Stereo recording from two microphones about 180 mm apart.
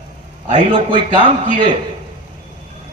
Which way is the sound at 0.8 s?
25° right (ahead or behind).